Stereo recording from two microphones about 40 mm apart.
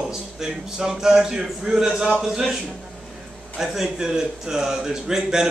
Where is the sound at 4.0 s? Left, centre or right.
Centre.